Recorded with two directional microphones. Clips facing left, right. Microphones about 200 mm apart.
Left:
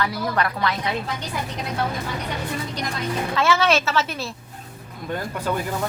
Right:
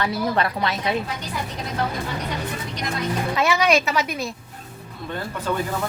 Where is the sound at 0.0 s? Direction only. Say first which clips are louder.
Right 1 dB; 25° right (ahead or behind).